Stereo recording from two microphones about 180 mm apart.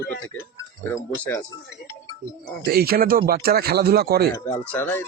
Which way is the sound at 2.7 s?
55° right (ahead or behind).